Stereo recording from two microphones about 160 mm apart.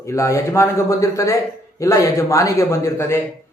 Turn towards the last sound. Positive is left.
turn(degrees=15)  # may be behind; listen again after turning